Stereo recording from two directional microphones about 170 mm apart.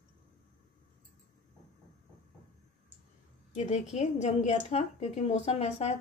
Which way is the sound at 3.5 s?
40° left (ahead or behind).